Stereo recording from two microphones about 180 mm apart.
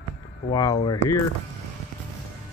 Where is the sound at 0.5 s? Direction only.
25° left (ahead or behind).